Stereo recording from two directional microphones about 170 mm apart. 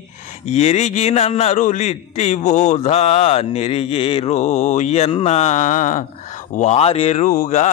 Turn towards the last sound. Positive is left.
turn(degrees=50)  # may be behind; listen again after turning